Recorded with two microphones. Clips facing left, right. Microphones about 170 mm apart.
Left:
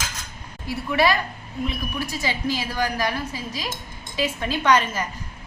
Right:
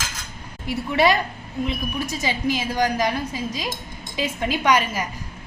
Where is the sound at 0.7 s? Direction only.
20° right (ahead or behind).